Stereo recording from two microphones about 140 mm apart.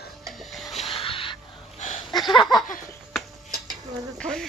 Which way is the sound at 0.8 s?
40° left (ahead or behind).